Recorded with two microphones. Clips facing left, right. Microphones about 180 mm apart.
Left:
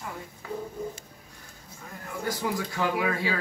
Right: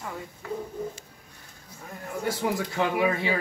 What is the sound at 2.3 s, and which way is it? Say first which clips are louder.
Speech: right 2 dB; 20° right (ahead or behind).